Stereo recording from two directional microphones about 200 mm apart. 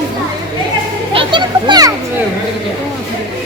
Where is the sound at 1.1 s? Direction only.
25° right (ahead or behind).